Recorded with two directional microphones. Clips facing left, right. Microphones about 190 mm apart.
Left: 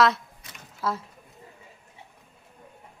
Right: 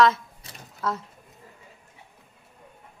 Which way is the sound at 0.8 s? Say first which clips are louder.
Even; centre (ahead or behind).